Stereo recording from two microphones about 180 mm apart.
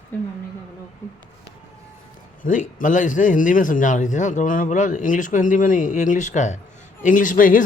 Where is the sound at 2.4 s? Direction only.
45° left (ahead or behind).